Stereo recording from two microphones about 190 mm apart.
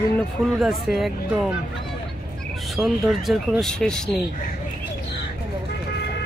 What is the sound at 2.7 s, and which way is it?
Speech, centre (ahead or behind).